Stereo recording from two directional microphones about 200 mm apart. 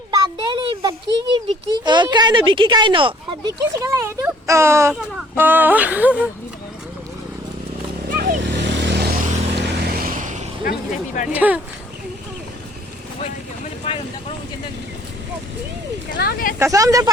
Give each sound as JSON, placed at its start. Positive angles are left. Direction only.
{"t": 0.1, "sound": "a child's voice", "side_deg": -20}
{"t": 8.1, "sound": "a sound", "side_deg": -45}
{"t": 9.9, "sound": "vehicle", "side_deg": -45}
{"t": 10.6, "sound": "speech", "side_deg": 45}
{"t": 11.3, "sound": "speech", "side_deg": -10}
{"t": 13.8, "sound": "vehicle", "side_deg": 30}
{"t": 16.1, "sound": "speech", "side_deg": 50}
{"t": 16.6, "sound": "speech", "side_deg": -15}